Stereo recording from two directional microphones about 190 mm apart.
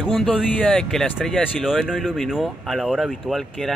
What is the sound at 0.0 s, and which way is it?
Speech, centre (ahead or behind).